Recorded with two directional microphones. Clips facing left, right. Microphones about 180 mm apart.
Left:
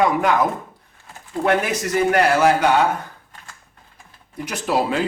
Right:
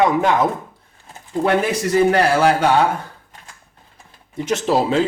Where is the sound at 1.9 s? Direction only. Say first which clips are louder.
Right 2 dB; 30° right (ahead or behind).